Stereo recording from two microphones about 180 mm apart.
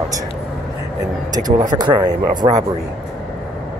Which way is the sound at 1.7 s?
25° right (ahead or behind).